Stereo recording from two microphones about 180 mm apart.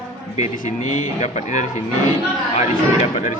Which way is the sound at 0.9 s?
40° left (ahead or behind).